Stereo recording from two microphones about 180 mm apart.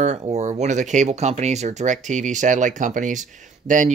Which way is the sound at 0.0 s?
40° right (ahead or behind).